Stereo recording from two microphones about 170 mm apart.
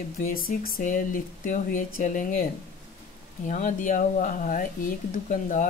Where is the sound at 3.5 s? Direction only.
45° left (ahead or behind).